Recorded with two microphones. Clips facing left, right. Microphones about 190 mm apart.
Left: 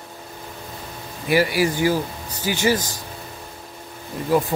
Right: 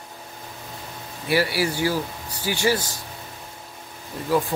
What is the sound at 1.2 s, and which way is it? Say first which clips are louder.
Speech: left 3 dB; 15° left (ahead or behind).